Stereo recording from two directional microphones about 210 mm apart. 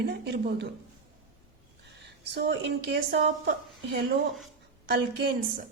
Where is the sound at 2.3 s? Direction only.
55° right (ahead or behind).